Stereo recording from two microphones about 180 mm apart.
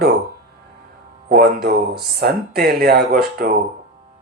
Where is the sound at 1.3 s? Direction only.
60° right (ahead or behind).